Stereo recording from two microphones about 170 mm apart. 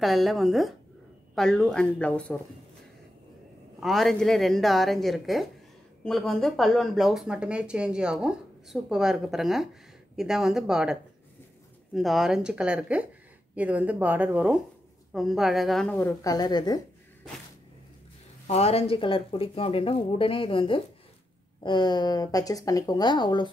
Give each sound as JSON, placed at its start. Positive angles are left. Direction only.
{"t": 0.0, "sound": "speech", "side_deg": 0}
{"t": 3.8, "sound": "a woman's voice", "side_deg": 0}
{"t": 16.3, "sound": "speech", "side_deg": 25}
{"t": 18.5, "sound": "speech", "side_deg": 40}